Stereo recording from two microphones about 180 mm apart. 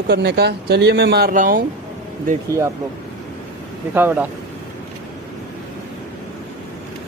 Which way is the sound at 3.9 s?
10° right (ahead or behind).